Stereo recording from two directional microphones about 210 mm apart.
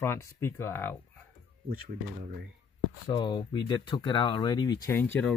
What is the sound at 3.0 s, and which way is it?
Speech, 20° left (ahead or behind).